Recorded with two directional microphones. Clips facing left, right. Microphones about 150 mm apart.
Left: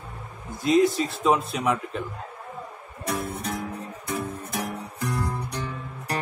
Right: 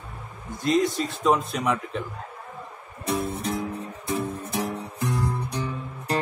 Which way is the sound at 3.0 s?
20° right (ahead or behind).